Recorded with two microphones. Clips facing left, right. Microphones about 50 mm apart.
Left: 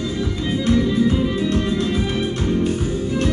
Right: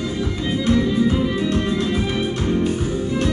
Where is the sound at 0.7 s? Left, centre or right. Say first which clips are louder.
Left 1 dB; centre.